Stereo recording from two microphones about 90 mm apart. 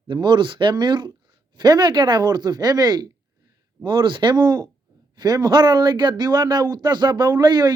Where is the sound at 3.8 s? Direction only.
60° right (ahead or behind).